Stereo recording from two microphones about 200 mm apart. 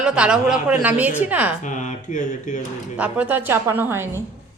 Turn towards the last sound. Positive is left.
turn(degrees=-10)  # may be behind; listen again after turning